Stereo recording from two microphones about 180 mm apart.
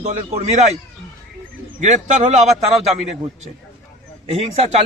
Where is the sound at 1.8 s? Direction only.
40° right (ahead or behind).